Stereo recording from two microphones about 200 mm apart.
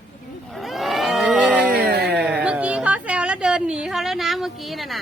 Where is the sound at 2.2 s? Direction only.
5° right (ahead or behind).